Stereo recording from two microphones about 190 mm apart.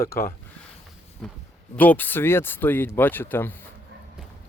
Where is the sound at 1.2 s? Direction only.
Centre (ahead or behind).